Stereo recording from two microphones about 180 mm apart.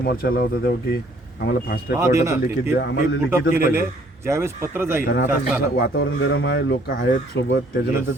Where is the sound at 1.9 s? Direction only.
15° right (ahead or behind).